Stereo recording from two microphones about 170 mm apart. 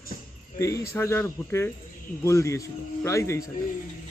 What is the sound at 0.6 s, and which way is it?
Speech, 20° left (ahead or behind).